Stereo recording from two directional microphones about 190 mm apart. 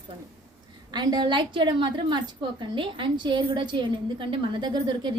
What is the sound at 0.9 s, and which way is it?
A woman's voice, 20° right (ahead or behind).